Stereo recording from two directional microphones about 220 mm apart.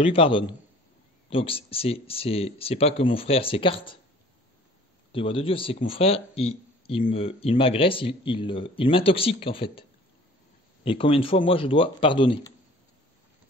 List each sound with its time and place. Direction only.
0.0 s speech: 25° left (ahead or behind)
5.1 s speech: 25° left (ahead or behind)